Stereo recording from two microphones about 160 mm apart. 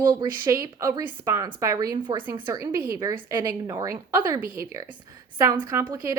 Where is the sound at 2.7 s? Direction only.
65° right (ahead or behind).